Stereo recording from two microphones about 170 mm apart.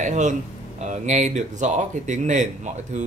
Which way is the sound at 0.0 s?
45° right (ahead or behind).